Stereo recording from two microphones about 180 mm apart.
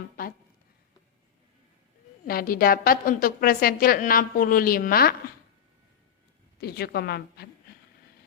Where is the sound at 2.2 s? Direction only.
55° left (ahead or behind).